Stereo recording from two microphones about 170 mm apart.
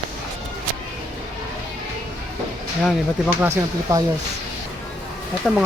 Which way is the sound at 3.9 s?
20° right (ahead or behind).